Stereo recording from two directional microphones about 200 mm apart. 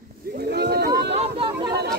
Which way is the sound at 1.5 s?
15° right (ahead or behind).